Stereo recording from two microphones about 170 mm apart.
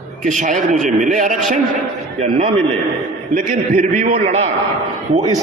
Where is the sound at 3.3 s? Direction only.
50° right (ahead or behind).